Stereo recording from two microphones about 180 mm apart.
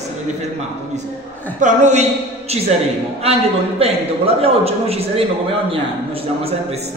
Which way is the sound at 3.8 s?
35° right (ahead or behind).